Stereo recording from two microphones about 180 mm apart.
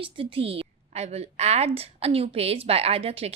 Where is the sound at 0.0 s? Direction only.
30° right (ahead or behind).